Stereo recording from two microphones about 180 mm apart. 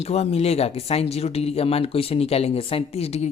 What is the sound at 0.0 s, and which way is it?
Speech, 35° left (ahead or behind).